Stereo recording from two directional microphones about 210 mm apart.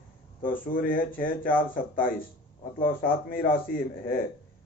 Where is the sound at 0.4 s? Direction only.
40° left (ahead or behind).